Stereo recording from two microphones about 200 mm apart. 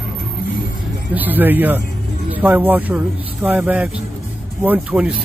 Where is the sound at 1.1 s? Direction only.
10° right (ahead or behind).